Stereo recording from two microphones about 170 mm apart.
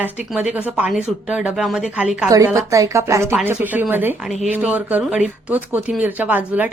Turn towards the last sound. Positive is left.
turn(degrees=-10)  # may be behind; listen again after turning